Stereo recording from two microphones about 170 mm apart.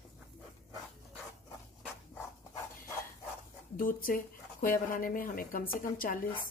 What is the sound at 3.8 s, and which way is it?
A woman's voice, 55° left (ahead or behind).